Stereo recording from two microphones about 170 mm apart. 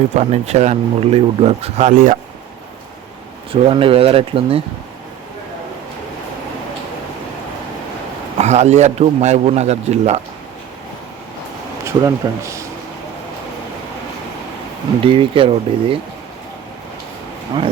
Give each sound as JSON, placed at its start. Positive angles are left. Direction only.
{"t": 0.1, "sound": "speech", "side_deg": -40}
{"t": 1.9, "sound": "speech", "side_deg": -50}
{"t": 3.5, "sound": "speech", "side_deg": -30}
{"t": 8.4, "sound": "speech", "side_deg": -40}
{"t": 11.9, "sound": "speech", "side_deg": -15}
{"t": 15.0, "sound": "speech", "side_deg": -30}